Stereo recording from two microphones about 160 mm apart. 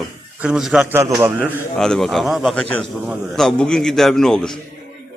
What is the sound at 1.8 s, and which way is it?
A man's voice, 5° left (ahead or behind).